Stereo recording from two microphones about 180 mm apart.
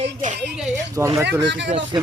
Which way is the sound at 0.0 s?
45° right (ahead or behind).